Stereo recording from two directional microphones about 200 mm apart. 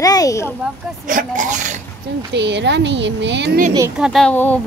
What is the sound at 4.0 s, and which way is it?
Speech, centre (ahead or behind).